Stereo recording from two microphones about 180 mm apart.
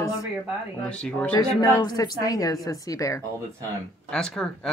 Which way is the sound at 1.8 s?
20° left (ahead or behind).